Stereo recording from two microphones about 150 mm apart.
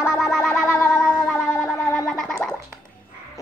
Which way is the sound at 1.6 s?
5° left (ahead or behind).